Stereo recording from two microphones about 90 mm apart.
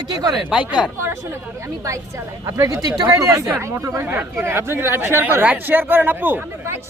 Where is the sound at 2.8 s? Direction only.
45° right (ahead or behind).